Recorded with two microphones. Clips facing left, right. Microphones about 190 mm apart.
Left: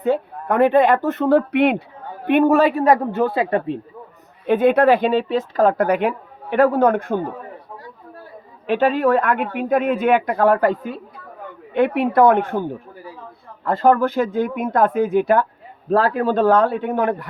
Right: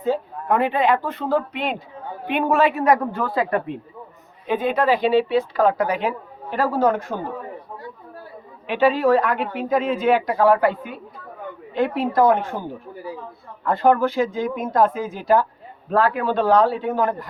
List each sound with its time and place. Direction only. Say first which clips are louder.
0.0 s a sound: left 3 dB; 65° left (ahead or behind)
0.5 s a man's voice: left 5 dB; 45° left (ahead or behind)
1.1 s speech: left 7 dB; 65° left (ahead or behind)
2.2 s a woman's voice: left 5 dB; 50° left (ahead or behind); by 3.6 s 25° left (ahead or behind)
4.4 s speech: left 6 dB; 65° left (ahead or behind)
8.6 s speech: left 1 dB; 45° left (ahead or behind)
11.7 s speech: left 4 dB; 65° left (ahead or behind)
13.7 s a man's voice: left 2 dB; 45° left (ahead or behind)
14.3 s speech: left 3 dB; 60° left (ahead or behind)
15.9 s a man's voice: left 2 dB; 40° left (ahead or behind); by 17.2 s 65° left (ahead or behind)